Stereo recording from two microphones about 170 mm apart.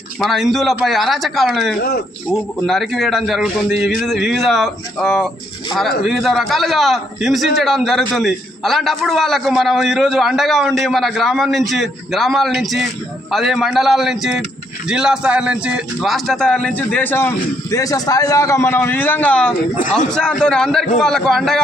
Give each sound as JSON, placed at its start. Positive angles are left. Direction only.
{"t": 0.2, "sound": "a man's voice", "side_deg": 0}
{"t": 19.7, "sound": "a man's voice", "side_deg": 50}
{"t": 20.1, "sound": "a man's voice", "side_deg": 5}